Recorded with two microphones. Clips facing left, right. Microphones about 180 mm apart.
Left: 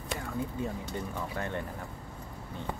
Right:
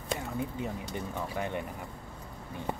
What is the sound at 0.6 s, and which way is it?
Speech, 15° right (ahead or behind).